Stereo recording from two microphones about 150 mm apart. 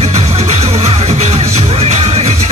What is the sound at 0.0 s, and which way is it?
Music, 45° right (ahead or behind).